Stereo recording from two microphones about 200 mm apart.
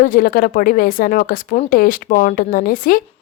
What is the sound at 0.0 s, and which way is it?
Speech, 45° left (ahead or behind).